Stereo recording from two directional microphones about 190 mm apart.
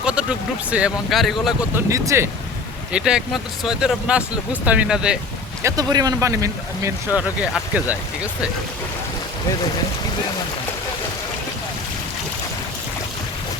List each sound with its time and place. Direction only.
0.0 s speech: 5° right (ahead or behind)
1.7 s speech: 15° right (ahead or behind)
2.9 s speech: 5° right (ahead or behind)
5.6 s speech: 20° right (ahead or behind)